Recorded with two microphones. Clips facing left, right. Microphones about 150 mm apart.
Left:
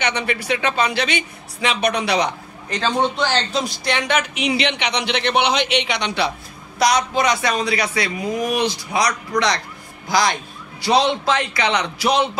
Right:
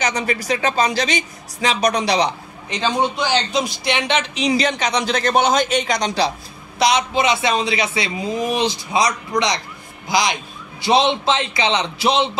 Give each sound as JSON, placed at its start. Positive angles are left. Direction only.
{"t": 0.0, "sound": "speech", "side_deg": -40}
{"t": 2.8, "sound": "a man's voice", "side_deg": -10}
{"t": 4.5, "sound": "speech", "side_deg": -40}
{"t": 6.8, "sound": "a man's voice", "side_deg": -25}